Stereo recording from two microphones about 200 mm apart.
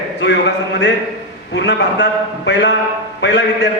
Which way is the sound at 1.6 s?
60° left (ahead or behind).